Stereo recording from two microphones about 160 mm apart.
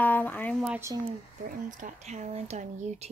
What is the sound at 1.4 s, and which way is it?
Speech, 55° right (ahead or behind).